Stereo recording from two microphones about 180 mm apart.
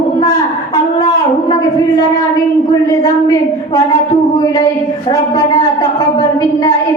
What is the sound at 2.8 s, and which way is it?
A woman's voice, 20° left (ahead or behind).